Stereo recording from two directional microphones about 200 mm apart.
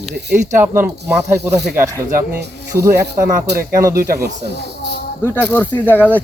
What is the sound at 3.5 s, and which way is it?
Speech, 50° right (ahead or behind).